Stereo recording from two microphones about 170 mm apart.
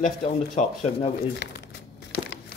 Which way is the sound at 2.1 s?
70° left (ahead or behind).